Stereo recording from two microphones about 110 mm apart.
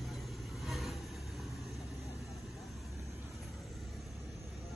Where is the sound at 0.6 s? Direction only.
Centre (ahead or behind).